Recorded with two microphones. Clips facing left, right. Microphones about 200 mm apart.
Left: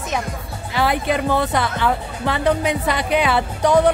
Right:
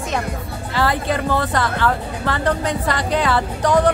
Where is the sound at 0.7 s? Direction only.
15° left (ahead or behind).